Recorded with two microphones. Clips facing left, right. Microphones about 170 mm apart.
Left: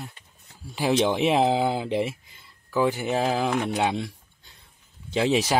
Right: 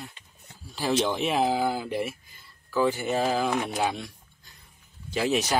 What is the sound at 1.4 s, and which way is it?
Speech, 25° left (ahead or behind).